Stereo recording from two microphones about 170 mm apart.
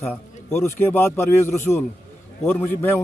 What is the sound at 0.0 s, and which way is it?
A man's voice, 10° left (ahead or behind).